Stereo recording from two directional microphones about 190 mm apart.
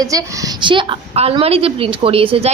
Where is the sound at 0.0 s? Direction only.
20° right (ahead or behind).